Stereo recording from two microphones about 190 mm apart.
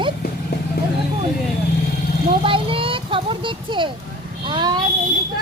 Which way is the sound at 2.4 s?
30° right (ahead or behind).